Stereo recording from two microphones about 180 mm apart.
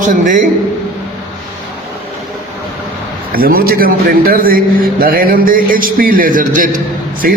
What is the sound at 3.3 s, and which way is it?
A man's voice, 55° right (ahead or behind).